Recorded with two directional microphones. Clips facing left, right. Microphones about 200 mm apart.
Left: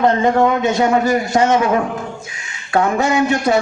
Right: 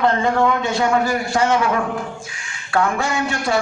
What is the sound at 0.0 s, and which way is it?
A man's voice, 20° left (ahead or behind).